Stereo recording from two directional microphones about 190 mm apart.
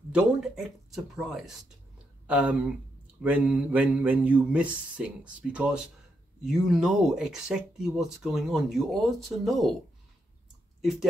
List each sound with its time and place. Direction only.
0.9 s speech: centre (ahead or behind)
10.8 s speech: centre (ahead or behind)